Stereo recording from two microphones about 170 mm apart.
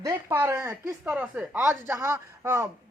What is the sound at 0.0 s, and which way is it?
Speech, 15° right (ahead or behind).